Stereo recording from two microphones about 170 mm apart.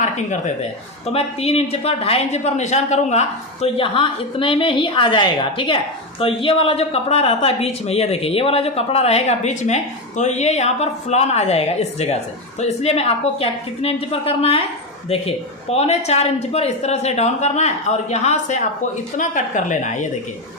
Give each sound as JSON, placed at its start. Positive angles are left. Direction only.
{"t": 0.0, "sound": "a woman's voice", "side_deg": 45}